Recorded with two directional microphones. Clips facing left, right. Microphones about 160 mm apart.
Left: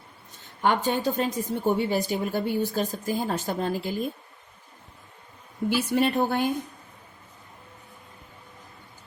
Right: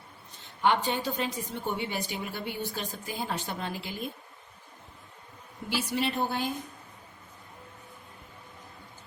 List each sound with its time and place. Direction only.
0.6 s a woman's voice: 45° left (ahead or behind)
5.6 s a woman's voice: 50° left (ahead or behind)